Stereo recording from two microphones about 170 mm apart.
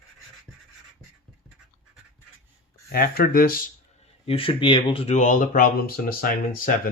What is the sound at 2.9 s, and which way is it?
Speech, 60° left (ahead or behind).